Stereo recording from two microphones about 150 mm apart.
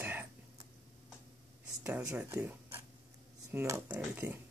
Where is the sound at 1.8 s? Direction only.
15° right (ahead or behind).